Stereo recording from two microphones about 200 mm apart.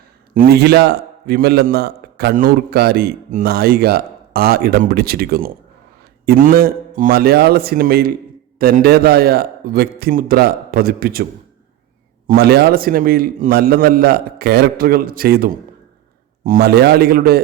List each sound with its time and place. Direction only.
0.3 s a man's voice: 50° right (ahead or behind)
12.3 s a man's voice: 55° right (ahead or behind)